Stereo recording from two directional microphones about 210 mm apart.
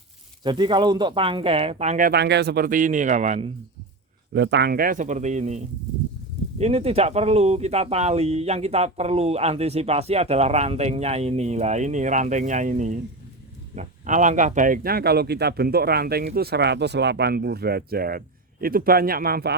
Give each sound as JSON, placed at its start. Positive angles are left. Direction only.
{"t": 0.4, "sound": "speech", "side_deg": -20}
{"t": 4.4, "sound": "speech", "side_deg": -55}